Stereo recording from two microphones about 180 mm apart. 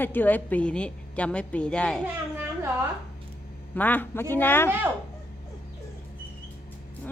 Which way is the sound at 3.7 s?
10° left (ahead or behind).